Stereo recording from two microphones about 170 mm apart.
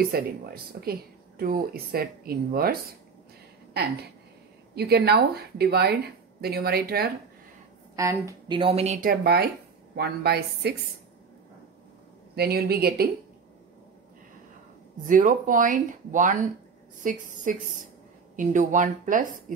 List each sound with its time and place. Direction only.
0.1 s speech: 65° right (ahead or behind)
1.4 s speech: 60° right (ahead or behind)
4.7 s a woman's voice: 70° right (ahead or behind)
7.9 s a woman's voice: 20° right (ahead or behind)
8.5 s speech: 35° right (ahead or behind)
9.1 s a woman's voice: 70° right (ahead or behind)
12.4 s speech: 65° right (ahead or behind)
15.0 s speech: 50° right (ahead or behind)